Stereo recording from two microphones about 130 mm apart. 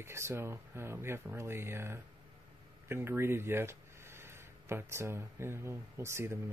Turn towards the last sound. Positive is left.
turn(degrees=-20)  # may be behind; listen again after turning